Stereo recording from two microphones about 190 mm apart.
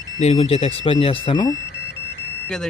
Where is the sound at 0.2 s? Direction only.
35° left (ahead or behind).